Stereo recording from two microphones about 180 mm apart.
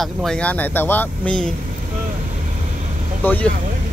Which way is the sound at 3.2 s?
10° left (ahead or behind).